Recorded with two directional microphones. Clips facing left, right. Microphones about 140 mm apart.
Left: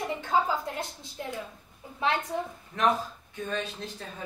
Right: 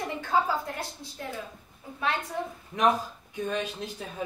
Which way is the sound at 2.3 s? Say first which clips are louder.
Left 1 dB; 20° left (ahead or behind).